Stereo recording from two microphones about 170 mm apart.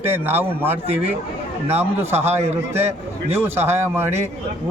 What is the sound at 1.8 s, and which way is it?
Speech, 15° right (ahead or behind).